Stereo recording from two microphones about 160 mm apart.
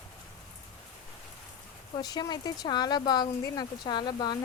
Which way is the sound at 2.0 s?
25° left (ahead or behind).